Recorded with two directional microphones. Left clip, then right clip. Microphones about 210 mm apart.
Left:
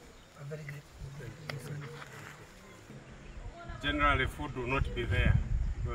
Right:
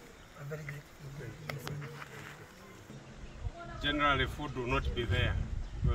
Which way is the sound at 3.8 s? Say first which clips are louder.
Left 1 dB; 5° right (ahead or behind).